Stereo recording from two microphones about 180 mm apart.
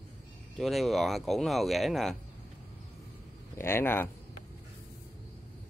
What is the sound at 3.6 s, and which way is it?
Speech, 15° left (ahead or behind).